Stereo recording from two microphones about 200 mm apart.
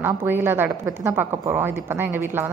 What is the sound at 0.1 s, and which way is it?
A woman's voice, 10° right (ahead or behind).